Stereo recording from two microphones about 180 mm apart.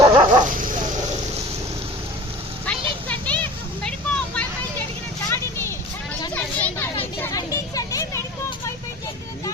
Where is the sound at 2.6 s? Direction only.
10° left (ahead or behind).